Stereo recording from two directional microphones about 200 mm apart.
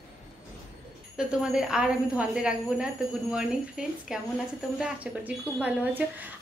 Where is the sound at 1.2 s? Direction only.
5° right (ahead or behind).